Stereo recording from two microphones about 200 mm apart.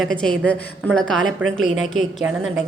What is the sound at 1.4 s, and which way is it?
A woman's voice, 5° right (ahead or behind).